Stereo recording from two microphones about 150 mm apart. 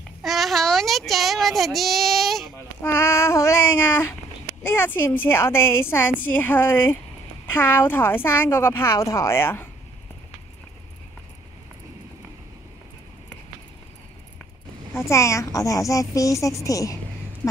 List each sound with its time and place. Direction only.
0.2 s a child's voice: centre (ahead or behind)
2.8 s a woman's voice: 15° left (ahead or behind)
15.0 s speech: 20° left (ahead or behind)